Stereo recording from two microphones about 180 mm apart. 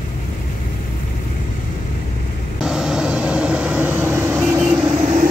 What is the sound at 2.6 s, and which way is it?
Vehicle, 5° right (ahead or behind).